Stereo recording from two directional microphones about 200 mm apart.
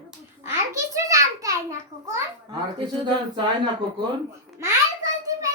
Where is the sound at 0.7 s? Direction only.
15° right (ahead or behind).